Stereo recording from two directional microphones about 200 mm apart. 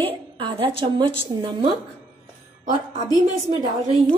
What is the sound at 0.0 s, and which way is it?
A woman's voice, 25° right (ahead or behind).